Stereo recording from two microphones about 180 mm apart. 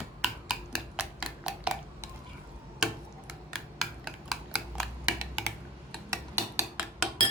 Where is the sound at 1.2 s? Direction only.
5° right (ahead or behind).